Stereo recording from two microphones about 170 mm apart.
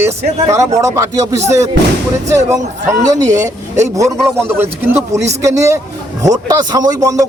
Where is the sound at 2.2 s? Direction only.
20° right (ahead or behind).